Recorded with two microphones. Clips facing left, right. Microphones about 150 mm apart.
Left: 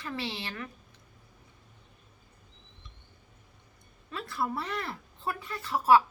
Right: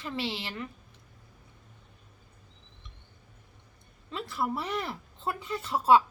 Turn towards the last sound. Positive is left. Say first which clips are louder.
# right 1 dB
turn(degrees=-20)  # may be behind; listen again after turning